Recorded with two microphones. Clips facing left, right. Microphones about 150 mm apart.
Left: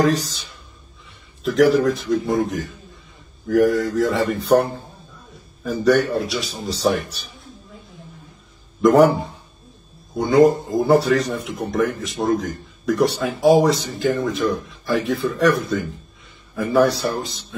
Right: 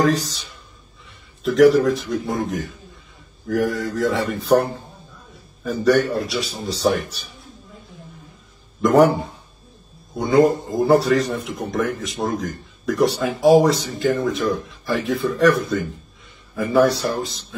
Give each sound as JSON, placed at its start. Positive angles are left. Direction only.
{"t": 0.1, "sound": "speech", "side_deg": 0}
{"t": 1.4, "sound": "speech", "side_deg": 0}
{"t": 5.6, "sound": "speech", "side_deg": 0}
{"t": 8.8, "sound": "speech", "side_deg": 0}